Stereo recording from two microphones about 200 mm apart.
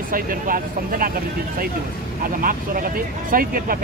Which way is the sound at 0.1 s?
45° right (ahead or behind).